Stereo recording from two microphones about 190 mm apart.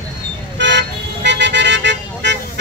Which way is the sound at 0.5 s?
70° right (ahead or behind).